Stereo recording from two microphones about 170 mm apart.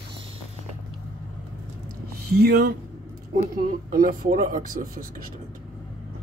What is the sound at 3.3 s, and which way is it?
Speech, 60° right (ahead or behind).